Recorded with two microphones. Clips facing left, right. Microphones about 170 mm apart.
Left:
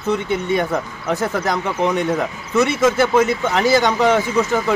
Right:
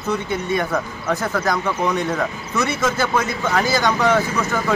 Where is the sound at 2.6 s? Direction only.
20° left (ahead or behind).